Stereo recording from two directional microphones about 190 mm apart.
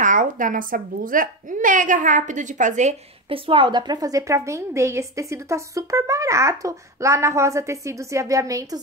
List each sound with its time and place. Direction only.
0.0 s a woman's voice: 45° right (ahead or behind); by 8.6 s 15° right (ahead or behind)